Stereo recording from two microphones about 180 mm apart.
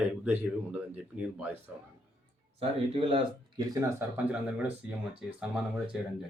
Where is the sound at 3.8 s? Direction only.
15° right (ahead or behind).